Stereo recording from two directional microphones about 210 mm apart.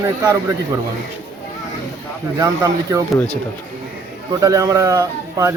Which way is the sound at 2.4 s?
15° right (ahead or behind).